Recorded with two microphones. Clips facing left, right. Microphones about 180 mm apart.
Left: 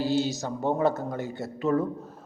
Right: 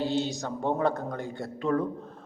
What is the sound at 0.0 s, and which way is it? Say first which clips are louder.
Speech: left 2 dB; 5° left (ahead or behind).